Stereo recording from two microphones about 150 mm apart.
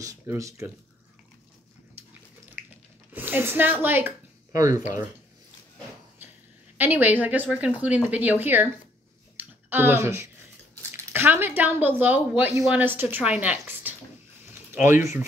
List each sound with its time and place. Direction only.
0.0 s speech: 20° right (ahead or behind)
3.1 s speech: 10° right (ahead or behind)
6.8 s a woman's voice: 10° right (ahead or behind)
9.4 s a sound: 15° right (ahead or behind)
11.1 s a woman's voice: 15° right (ahead or behind)
14.5 s a sound: 15° right (ahead or behind)